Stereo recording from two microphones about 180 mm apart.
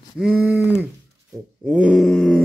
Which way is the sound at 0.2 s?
10° right (ahead or behind).